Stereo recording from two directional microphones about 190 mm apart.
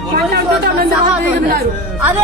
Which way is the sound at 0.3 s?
55° right (ahead or behind).